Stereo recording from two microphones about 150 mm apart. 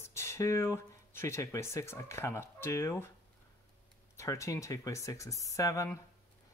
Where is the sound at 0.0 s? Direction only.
20° left (ahead or behind).